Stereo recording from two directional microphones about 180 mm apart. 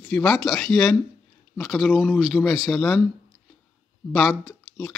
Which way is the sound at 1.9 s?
5° right (ahead or behind).